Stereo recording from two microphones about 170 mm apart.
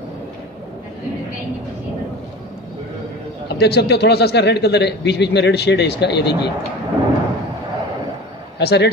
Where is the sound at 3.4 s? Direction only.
75° left (ahead or behind).